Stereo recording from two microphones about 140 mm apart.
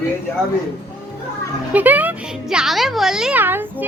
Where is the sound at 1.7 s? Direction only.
10° right (ahead or behind).